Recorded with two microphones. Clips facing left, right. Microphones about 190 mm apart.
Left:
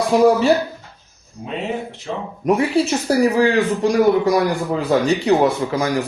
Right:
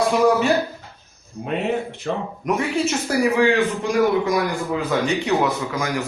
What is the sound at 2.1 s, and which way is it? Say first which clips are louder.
Speech: right 2 dB; 55° right (ahead or behind).